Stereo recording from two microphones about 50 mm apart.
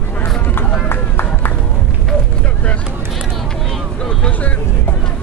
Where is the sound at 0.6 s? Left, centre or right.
Left.